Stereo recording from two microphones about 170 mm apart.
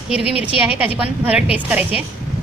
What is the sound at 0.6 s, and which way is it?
A woman's voice, 10° right (ahead or behind).